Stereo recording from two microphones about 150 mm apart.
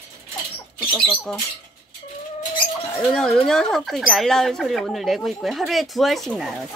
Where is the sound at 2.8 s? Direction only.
15° left (ahead or behind).